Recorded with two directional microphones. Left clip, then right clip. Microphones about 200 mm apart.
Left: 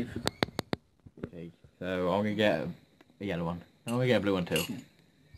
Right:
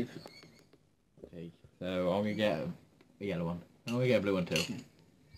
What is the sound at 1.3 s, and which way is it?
Speech, 30° left (ahead or behind).